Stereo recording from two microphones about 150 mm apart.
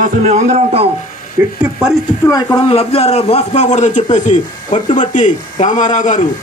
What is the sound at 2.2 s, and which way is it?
Speech, 25° left (ahead or behind).